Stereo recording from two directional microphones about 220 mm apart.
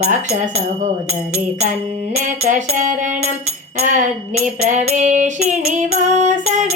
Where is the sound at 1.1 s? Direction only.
70° right (ahead or behind).